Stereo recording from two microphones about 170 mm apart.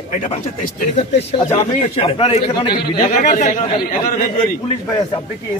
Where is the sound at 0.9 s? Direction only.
40° left (ahead or behind).